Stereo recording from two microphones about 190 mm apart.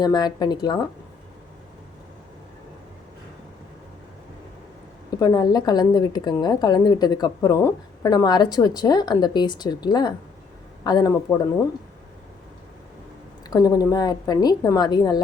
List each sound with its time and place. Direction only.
0.0 s a woman's voice: 20° left (ahead or behind)
5.2 s a woman's voice: 20° left (ahead or behind)
13.5 s a woman's voice: 20° left (ahead or behind)